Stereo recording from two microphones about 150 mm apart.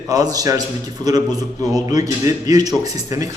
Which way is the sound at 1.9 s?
25° right (ahead or behind).